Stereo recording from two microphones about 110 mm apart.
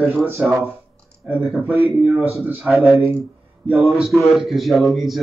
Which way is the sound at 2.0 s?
5° right (ahead or behind).